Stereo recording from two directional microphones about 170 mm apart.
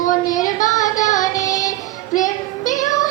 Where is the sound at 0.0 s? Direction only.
50° left (ahead or behind).